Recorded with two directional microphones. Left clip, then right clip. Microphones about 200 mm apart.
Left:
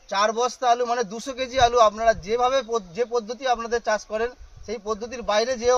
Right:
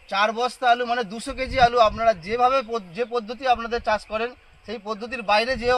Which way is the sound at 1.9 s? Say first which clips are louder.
Even; 20° left (ahead or behind).